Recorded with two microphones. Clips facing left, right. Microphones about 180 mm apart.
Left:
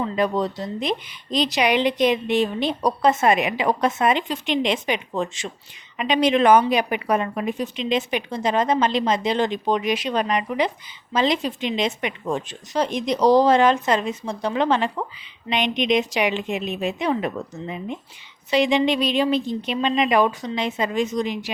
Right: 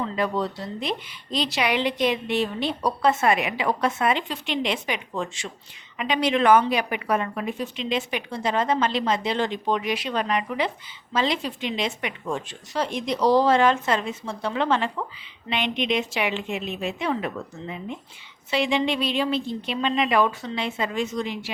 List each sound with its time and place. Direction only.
0.2 s a woman's voice: 20° left (ahead or behind)